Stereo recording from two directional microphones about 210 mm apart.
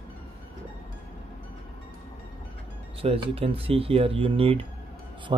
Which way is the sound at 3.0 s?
25° right (ahead or behind).